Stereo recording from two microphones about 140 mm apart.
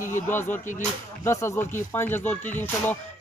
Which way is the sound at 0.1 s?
15° left (ahead or behind).